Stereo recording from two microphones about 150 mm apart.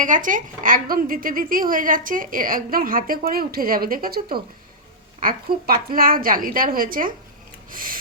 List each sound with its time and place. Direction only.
0.0 s a woman's voice: 60° right (ahead or behind); by 4.4 s 85° right
5.2 s a woman's voice: 75° right (ahead or behind)